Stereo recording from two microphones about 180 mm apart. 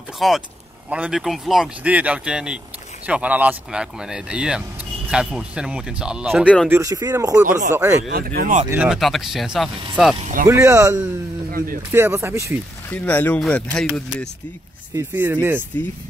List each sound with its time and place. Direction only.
0.2 s speech: centre (ahead or behind)
6.4 s speech: 5° left (ahead or behind)
6.7 s speech: 15° right (ahead or behind)
8.1 s speech: 55° right (ahead or behind)
8.6 s speech: 5° right (ahead or behind)
10.4 s speech: 15° right (ahead or behind)
11.5 s speech: 50° right (ahead or behind)
11.9 s speech: 15° right (ahead or behind)
12.9 s speech: 10° left (ahead or behind)
15.0 s speech: 10° right (ahead or behind)
15.7 s speech: 10° left (ahead or behind)